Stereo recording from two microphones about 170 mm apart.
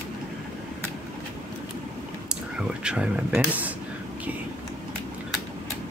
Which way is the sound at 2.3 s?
5° right (ahead or behind).